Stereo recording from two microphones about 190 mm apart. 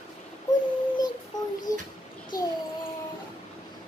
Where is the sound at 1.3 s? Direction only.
40° left (ahead or behind).